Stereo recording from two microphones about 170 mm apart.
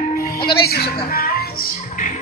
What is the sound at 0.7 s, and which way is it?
Music, 70° left (ahead or behind).